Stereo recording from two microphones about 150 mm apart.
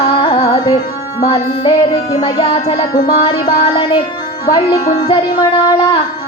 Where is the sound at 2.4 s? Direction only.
45° left (ahead or behind).